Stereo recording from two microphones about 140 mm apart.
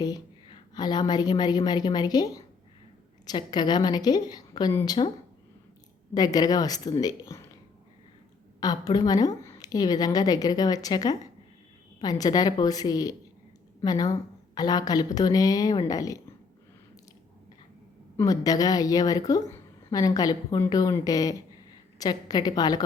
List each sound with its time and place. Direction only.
0.0 s a woman's voice: 30° left (ahead or behind)
6.1 s speech: 25° left (ahead or behind)
8.6 s speech: 30° left (ahead or behind)
18.2 s speech: 25° left (ahead or behind)